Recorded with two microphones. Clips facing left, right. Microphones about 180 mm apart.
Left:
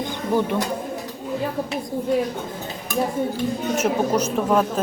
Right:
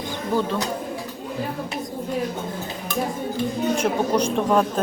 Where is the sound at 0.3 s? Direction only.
20° left (ahead or behind).